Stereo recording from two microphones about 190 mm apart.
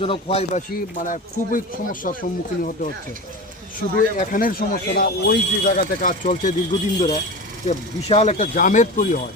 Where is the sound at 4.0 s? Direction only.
45° left (ahead or behind).